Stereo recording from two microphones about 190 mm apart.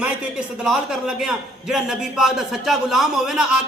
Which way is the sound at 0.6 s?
Centre (ahead or behind).